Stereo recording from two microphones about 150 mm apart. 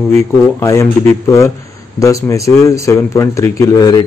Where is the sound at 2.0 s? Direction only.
20° left (ahead or behind).